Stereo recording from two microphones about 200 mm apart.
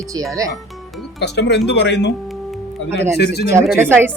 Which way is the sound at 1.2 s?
55° left (ahead or behind).